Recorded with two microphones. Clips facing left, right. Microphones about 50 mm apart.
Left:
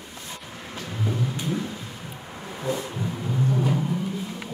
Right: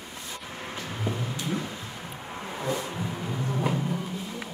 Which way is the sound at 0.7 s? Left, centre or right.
Centre.